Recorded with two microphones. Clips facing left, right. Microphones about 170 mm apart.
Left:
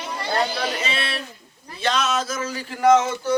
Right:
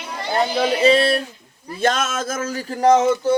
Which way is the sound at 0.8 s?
35° right (ahead or behind).